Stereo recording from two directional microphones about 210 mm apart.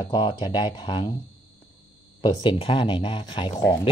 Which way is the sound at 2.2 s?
20° left (ahead or behind).